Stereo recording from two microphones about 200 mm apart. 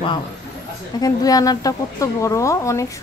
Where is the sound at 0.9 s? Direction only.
20° left (ahead or behind).